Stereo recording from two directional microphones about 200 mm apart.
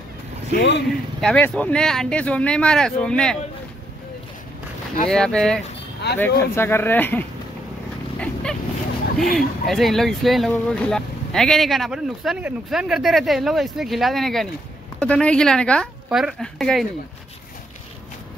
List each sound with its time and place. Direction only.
0.6 s speech: 60° left (ahead or behind)
1.2 s speech: 5° left (ahead or behind)
5.1 s speech: 5° left (ahead or behind)
8.2 s vehicle: 5° left (ahead or behind)
9.2 s speech: centre (ahead or behind)